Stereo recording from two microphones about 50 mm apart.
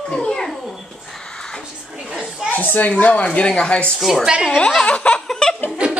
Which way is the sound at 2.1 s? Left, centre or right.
Centre.